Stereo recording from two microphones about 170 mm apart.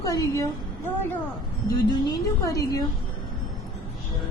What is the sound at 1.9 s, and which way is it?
Music, 25° left (ahead or behind).